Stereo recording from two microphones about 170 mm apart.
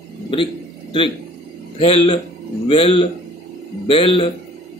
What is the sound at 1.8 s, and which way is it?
A man's voice, 35° left (ahead or behind).